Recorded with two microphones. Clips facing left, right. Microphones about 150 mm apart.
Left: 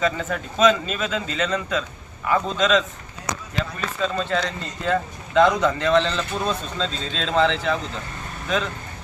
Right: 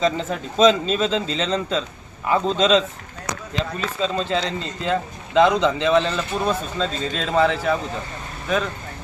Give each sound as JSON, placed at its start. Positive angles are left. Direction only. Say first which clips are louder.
{"t": 0.0, "sound": "speech", "louder": "right 2 dB", "side_deg": -25}
{"t": 4.9, "sound": "speech", "louder": "left 1 dB", "side_deg": -15}